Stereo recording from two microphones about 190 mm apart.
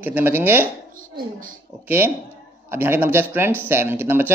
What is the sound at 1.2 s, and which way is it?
Speech, 45° right (ahead or behind).